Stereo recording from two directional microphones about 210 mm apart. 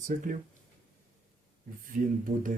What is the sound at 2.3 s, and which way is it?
Speech, 55° right (ahead or behind).